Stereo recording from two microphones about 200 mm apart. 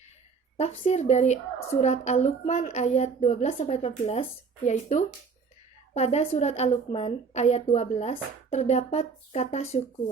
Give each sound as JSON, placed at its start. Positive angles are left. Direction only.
{"t": 0.5, "sound": "a woman's voice", "side_deg": 35}